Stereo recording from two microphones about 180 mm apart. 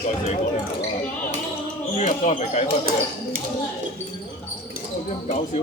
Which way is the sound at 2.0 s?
40° left (ahead or behind).